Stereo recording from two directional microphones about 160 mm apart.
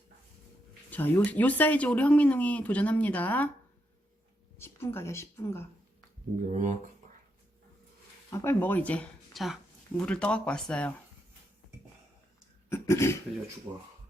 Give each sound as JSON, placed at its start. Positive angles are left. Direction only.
{"t": 0.9, "sound": "speech", "side_deg": 10}
{"t": 4.5, "sound": "a woman's voice", "side_deg": 15}
{"t": 6.5, "sound": "speech", "side_deg": -50}
{"t": 8.3, "sound": "speech", "side_deg": 15}
{"t": 12.6, "sound": "a sound", "side_deg": 15}
{"t": 13.7, "sound": "speech", "side_deg": -25}